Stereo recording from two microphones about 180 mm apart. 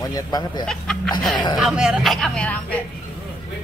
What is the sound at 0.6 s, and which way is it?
Speech, 5° left (ahead or behind).